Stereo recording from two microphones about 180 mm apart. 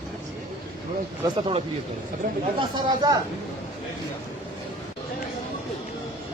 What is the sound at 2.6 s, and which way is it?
Speech, 25° right (ahead or behind).